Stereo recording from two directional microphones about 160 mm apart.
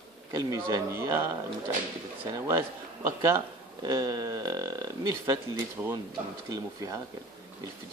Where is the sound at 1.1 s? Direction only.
15° right (ahead or behind).